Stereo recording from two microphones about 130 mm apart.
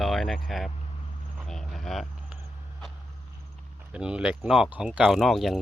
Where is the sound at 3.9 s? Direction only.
5° right (ahead or behind).